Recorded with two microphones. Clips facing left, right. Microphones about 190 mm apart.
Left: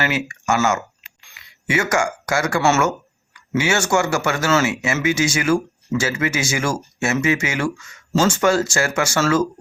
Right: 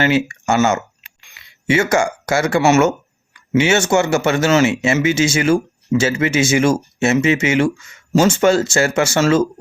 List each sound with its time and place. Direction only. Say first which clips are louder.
0.0 s speech: right 7 dB; 30° right (ahead or behind)